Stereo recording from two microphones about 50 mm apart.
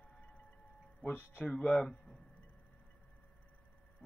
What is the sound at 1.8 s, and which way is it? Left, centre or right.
Speech, centre.